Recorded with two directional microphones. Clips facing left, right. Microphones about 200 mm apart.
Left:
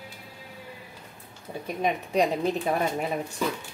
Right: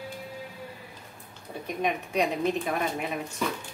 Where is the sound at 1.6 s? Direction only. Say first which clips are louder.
Left 1 dB; 30° left (ahead or behind).